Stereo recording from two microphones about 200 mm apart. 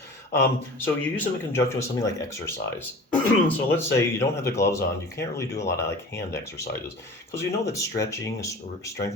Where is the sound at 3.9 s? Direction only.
15° left (ahead or behind).